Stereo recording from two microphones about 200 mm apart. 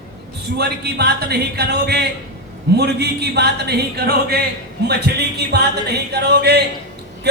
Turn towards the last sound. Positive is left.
turn(degrees=-55)  # may be behind; listen again after turning